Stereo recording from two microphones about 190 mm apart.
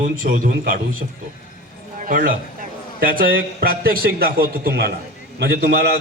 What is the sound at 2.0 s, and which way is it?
A man's voice, 45° right (ahead or behind).